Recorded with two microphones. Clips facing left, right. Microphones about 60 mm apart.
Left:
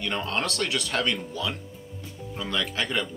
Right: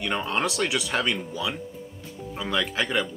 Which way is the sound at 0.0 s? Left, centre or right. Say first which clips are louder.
Right 2 dB; centre.